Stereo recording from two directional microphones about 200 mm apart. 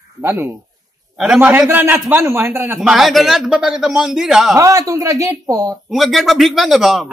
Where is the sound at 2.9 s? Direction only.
Centre (ahead or behind).